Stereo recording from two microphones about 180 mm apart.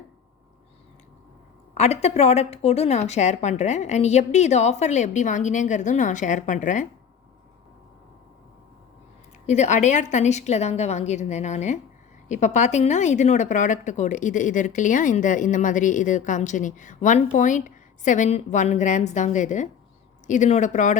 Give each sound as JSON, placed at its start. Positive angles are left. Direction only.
{"t": 1.7, "sound": "a woman's voice", "side_deg": 40}
{"t": 9.5, "sound": "a woman's voice", "side_deg": 40}